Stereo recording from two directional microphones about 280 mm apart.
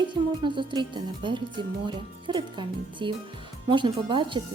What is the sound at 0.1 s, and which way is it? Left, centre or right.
Speech, centre.